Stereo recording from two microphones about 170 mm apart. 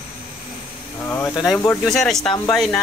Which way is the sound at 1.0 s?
15° left (ahead or behind).